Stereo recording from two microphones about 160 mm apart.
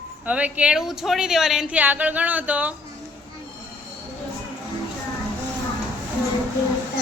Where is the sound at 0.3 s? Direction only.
10° right (ahead or behind).